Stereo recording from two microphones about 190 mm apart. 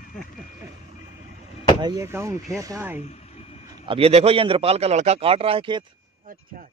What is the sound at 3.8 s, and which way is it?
A man's voice, 30° right (ahead or behind).